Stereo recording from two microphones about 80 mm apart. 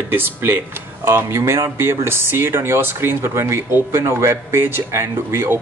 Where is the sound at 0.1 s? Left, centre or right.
Right.